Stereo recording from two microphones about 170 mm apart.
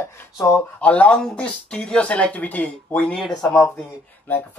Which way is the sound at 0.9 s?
5° left (ahead or behind).